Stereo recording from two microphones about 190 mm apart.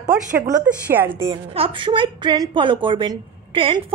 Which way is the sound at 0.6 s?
10° right (ahead or behind).